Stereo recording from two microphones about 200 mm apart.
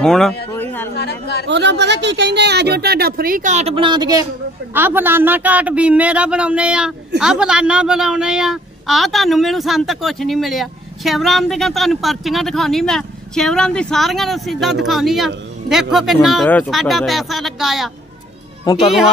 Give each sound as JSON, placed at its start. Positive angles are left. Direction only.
{"t": 0.0, "sound": "a man's voice", "side_deg": 0}
{"t": 0.9, "sound": "a woman's voice", "side_deg": 55}
{"t": 1.5, "sound": "a woman's voice", "side_deg": -60}
{"t": 18.7, "sound": "speech", "side_deg": 20}